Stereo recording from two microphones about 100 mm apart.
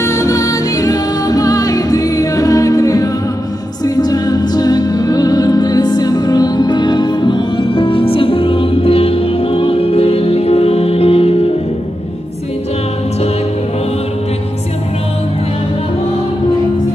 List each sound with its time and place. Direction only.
0.0 s music: 30° left (ahead or behind); by 11.3 s 75° left (ahead or behind)